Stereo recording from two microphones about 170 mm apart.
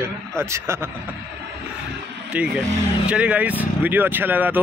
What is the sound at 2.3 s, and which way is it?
Speech, 5° right (ahead or behind).